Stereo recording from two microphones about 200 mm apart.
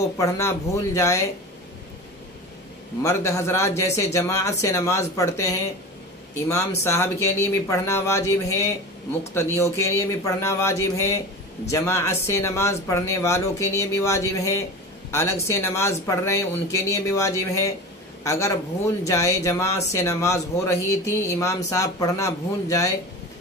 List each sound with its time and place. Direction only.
0.2 s speech: 15° left (ahead or behind)
3.0 s speech: 15° left (ahead or behind)
6.8 s speech: 15° left (ahead or behind)